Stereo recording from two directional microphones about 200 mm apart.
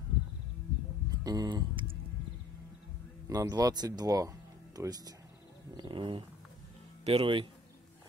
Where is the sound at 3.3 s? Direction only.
20° right (ahead or behind).